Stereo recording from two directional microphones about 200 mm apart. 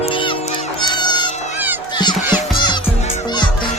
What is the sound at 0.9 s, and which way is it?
Cat, 20° left (ahead or behind).